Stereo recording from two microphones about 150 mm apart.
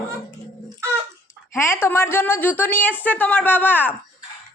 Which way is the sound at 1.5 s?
20° left (ahead or behind).